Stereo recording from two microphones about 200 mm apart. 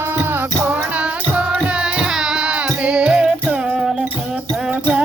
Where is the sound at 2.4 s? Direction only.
5° right (ahead or behind).